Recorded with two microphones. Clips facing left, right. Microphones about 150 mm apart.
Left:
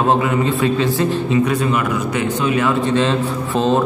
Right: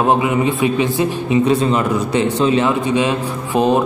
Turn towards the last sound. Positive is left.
turn(degrees=-15)  # may be behind; listen again after turning